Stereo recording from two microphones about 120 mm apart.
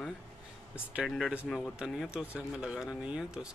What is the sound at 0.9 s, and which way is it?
Speech, 5° right (ahead or behind).